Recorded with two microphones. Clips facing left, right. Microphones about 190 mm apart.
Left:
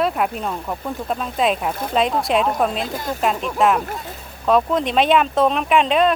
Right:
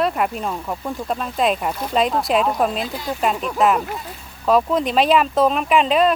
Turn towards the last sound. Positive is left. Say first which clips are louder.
# even
turn(degrees=0)  # may be behind; listen again after turning